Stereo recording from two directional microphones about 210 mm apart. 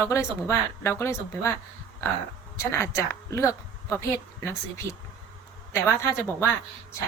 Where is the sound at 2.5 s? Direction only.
15° left (ahead or behind).